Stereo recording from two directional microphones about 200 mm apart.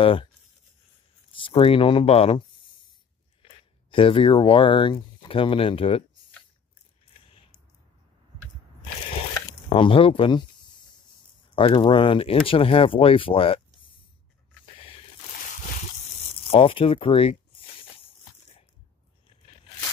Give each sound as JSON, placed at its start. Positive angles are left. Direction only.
{"t": 0.0, "sound": "speech", "side_deg": 25}
{"t": 1.3, "sound": "speech", "side_deg": 25}
{"t": 3.9, "sound": "speech", "side_deg": 25}
{"t": 9.7, "sound": "speech", "side_deg": 25}
{"t": 16.4, "sound": "speech", "side_deg": 25}